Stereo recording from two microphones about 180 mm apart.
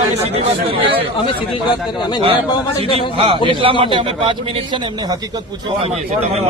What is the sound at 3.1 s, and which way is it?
A man's voice, 30° right (ahead or behind).